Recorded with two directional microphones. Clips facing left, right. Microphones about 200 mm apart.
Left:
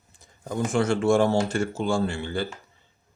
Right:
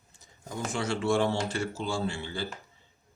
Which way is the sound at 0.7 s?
50° left (ahead or behind).